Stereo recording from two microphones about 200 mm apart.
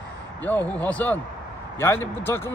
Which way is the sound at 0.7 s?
5° left (ahead or behind).